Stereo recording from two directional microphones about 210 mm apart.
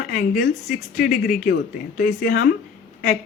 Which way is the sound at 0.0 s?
45° left (ahead or behind).